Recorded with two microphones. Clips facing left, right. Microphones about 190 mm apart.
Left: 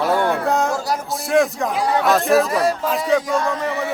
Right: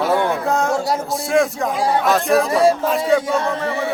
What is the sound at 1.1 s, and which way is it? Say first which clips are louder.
A man's voice: left 1 dB; centre (ahead or behind).